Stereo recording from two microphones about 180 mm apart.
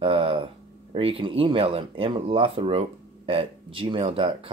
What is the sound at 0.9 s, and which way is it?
Speech, 30° right (ahead or behind).